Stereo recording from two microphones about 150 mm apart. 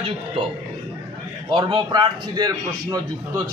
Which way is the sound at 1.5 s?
30° right (ahead or behind).